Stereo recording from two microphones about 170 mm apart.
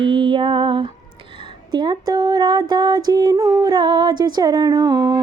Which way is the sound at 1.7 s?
25° right (ahead or behind).